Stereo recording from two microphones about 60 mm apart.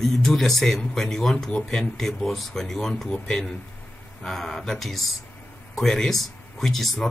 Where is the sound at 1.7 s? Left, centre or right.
Centre.